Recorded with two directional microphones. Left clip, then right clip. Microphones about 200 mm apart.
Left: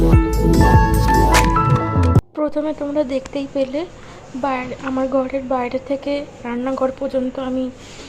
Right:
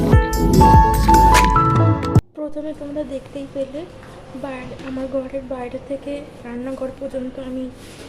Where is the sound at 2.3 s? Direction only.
20° left (ahead or behind).